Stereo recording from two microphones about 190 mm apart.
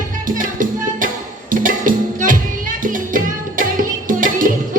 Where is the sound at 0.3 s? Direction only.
45° right (ahead or behind).